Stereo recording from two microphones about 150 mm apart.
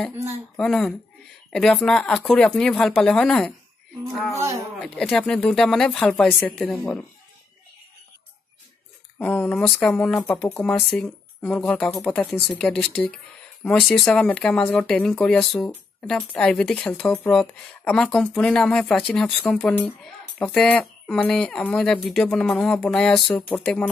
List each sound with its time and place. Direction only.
0.6 s speech: 5° left (ahead or behind)
4.3 s speech: 20° right (ahead or behind)
4.8 s speech: 5° left (ahead or behind)
9.2 s speech: 10° left (ahead or behind)